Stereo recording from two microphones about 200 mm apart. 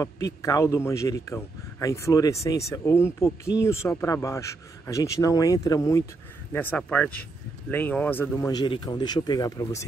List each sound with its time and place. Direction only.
0.0 s a man's voice: 15° left (ahead or behind)